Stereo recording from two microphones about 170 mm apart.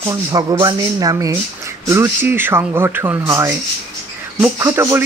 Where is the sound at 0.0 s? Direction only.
20° right (ahead or behind).